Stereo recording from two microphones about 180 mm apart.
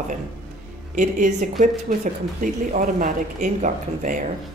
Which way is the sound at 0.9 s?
45° right (ahead or behind).